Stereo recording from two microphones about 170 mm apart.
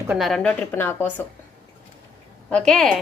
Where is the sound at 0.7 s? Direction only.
15° left (ahead or behind).